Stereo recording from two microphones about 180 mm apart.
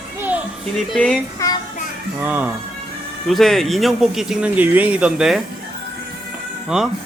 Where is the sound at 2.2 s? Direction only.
10° right (ahead or behind).